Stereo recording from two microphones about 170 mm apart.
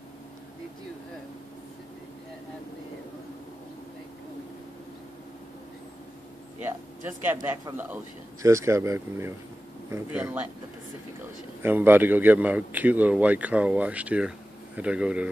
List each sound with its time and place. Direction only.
6.6 s a man's voice: 10° right (ahead or behind)
11.6 s a man's voice: 10° right (ahead or behind)